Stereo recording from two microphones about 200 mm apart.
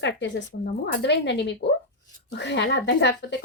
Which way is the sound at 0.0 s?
65° left (ahead or behind).